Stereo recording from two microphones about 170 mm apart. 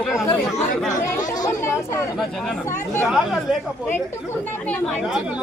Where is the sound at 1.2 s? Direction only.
20° left (ahead or behind).